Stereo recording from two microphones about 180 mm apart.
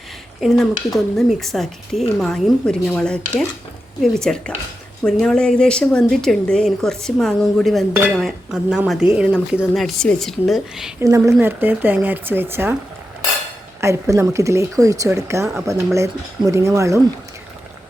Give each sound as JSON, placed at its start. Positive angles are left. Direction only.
{"t": 0.3, "sound": "speech", "side_deg": 0}
{"t": 11.0, "sound": "speech", "side_deg": -15}
{"t": 13.8, "sound": "speech", "side_deg": -15}